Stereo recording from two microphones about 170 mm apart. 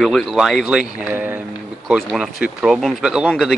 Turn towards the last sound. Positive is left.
turn(degrees=0)  # may be behind; listen again after turning